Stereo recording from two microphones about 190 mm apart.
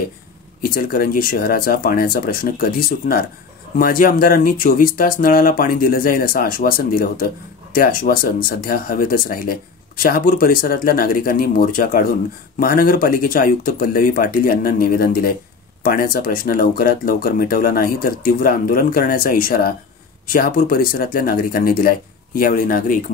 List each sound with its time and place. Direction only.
0.6 s speech: 50° left (ahead or behind)